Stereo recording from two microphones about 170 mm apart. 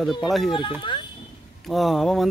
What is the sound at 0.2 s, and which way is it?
Speech, centre (ahead or behind).